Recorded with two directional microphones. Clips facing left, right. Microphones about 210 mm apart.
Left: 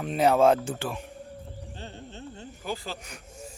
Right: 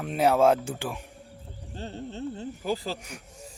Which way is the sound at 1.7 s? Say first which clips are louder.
Right 9 dB; 40° right (ahead or behind).